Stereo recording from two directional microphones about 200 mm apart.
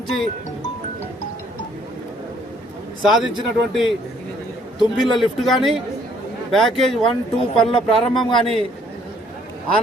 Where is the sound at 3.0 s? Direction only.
Centre (ahead or behind).